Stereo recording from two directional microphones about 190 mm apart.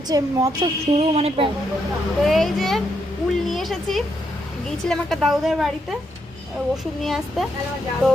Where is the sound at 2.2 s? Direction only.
Centre (ahead or behind).